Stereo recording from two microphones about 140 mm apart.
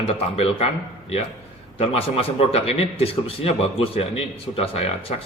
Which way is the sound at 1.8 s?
45° left (ahead or behind).